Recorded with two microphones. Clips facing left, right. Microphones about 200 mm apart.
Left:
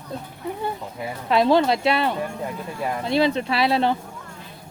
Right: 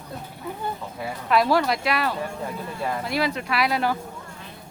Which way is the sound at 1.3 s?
25° left (ahead or behind).